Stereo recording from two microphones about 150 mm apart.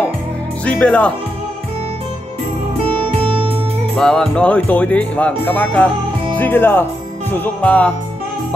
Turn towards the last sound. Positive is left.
turn(degrees=10)  # may be behind; listen again after turning